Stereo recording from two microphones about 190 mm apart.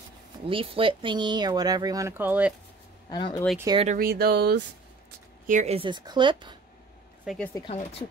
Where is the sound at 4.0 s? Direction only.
55° right (ahead or behind).